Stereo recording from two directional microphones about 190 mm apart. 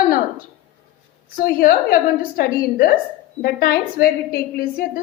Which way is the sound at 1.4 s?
50° left (ahead or behind).